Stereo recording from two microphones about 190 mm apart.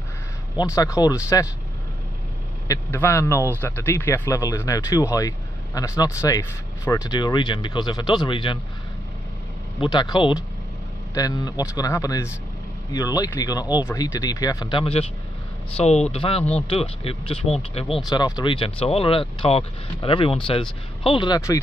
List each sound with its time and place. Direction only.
0.6 s a man's voice: 15° left (ahead or behind)
2.7 s a man's voice: 15° left (ahead or behind)
9.8 s a man's voice: 25° left (ahead or behind)